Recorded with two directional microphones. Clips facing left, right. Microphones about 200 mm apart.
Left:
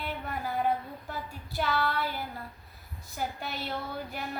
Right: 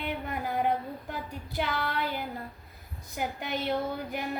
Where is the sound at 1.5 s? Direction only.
15° right (ahead or behind).